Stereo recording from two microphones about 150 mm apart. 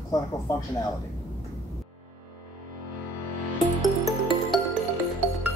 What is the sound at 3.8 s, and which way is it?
Music, centre (ahead or behind).